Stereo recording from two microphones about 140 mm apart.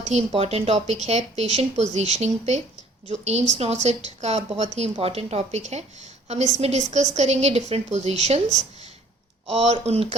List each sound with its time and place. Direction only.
0.0 s speech: 50° right (ahead or behind)